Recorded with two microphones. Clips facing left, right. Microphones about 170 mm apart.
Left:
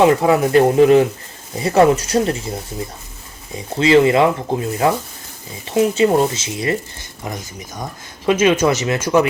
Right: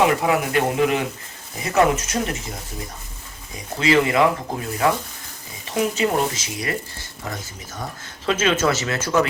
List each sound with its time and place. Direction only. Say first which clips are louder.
0.0 s speech: left 6 dB; 30° left (ahead or behind); by 9.3 s 15° left (ahead or behind)